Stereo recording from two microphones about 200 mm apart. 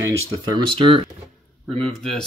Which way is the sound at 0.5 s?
25° right (ahead or behind).